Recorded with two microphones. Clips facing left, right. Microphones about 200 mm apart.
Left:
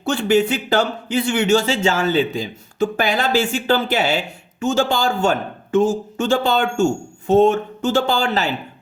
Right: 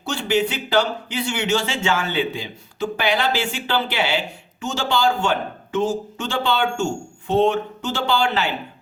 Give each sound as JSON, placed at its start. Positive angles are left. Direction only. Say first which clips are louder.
{"t": 0.0, "sound": "speech", "louder": "left 5 dB", "side_deg": 50}